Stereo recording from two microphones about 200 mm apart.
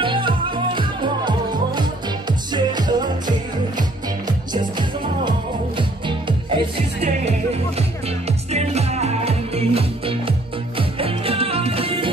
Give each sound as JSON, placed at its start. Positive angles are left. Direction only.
{"t": 0.0, "sound": "music", "side_deg": -25}